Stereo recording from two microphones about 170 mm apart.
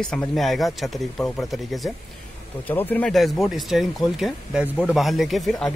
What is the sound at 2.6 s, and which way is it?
Speech, 10° left (ahead or behind).